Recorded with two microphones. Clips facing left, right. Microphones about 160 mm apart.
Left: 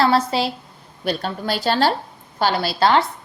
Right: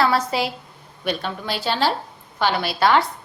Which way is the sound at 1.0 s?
40° left (ahead or behind).